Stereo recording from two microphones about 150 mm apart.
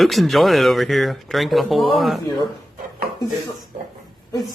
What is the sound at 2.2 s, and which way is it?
Speech, 30° left (ahead or behind).